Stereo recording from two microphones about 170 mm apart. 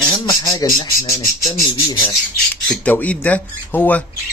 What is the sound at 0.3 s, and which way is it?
Speech, 20° left (ahead or behind).